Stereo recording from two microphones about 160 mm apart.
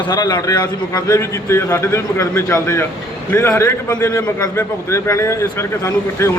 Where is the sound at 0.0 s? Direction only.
25° left (ahead or behind).